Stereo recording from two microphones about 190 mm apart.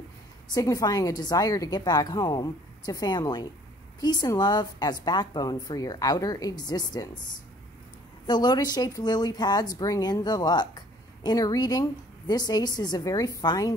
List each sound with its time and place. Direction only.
0.6 s a woman's voice: 15° left (ahead or behind)
8.3 s a woman's voice: 20° left (ahead or behind)